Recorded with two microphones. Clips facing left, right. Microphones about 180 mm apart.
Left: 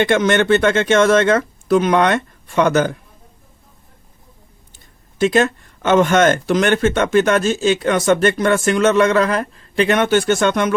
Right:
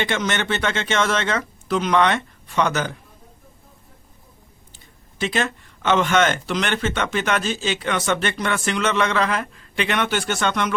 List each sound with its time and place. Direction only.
0.0 s speech: 55° left (ahead or behind)
5.2 s speech: 45° left (ahead or behind)